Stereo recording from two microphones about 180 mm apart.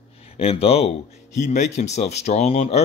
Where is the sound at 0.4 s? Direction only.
35° left (ahead or behind).